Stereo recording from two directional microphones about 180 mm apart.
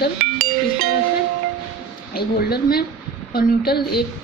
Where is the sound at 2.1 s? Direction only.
60° left (ahead or behind).